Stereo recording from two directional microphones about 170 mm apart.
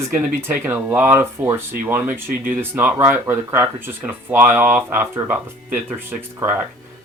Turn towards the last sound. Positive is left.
turn(degrees=-10)  # may be behind; listen again after turning